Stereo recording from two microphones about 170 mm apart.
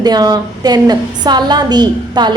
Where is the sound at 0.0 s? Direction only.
25° right (ahead or behind).